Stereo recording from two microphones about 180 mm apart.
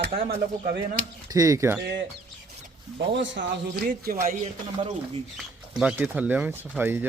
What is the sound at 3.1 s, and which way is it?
Speech, 90° right.